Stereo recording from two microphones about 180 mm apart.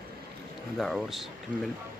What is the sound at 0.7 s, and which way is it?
Speech, centre (ahead or behind).